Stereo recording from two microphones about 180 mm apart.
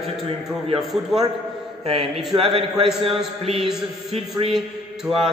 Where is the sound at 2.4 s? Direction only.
30° right (ahead or behind).